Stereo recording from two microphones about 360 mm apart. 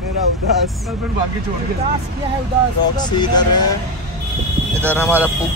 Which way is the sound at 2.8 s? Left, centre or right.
Centre.